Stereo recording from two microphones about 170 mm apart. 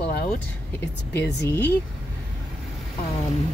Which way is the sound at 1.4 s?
10° left (ahead or behind).